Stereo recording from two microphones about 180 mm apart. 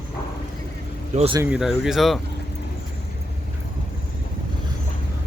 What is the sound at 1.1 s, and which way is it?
Speech, 40° right (ahead or behind).